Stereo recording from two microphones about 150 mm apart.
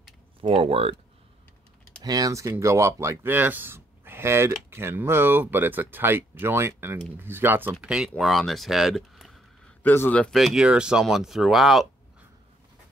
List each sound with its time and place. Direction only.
0.4 s speech: 40° right (ahead or behind)
2.0 s speech: 25° right (ahead or behind); by 9.4 s centre (ahead or behind)
9.8 s speech: 15° left (ahead or behind)